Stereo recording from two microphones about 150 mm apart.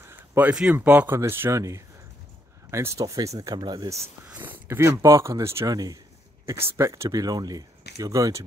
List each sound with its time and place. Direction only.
0.3 s speech: 10° right (ahead or behind)
4.3 s speech: 15° right (ahead or behind)